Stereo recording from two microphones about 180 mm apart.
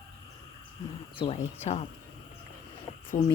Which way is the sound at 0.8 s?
30° left (ahead or behind).